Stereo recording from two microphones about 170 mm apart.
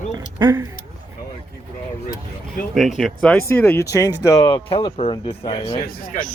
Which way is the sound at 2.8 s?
Centre (ahead or behind).